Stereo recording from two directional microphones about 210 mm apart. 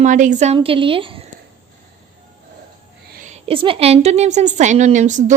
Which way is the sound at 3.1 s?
35° right (ahead or behind).